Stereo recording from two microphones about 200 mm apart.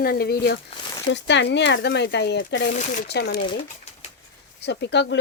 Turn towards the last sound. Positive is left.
turn(degrees=60)  # may be behind; listen again after turning